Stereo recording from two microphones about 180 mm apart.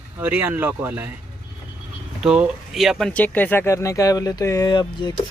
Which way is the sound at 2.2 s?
5° right (ahead or behind).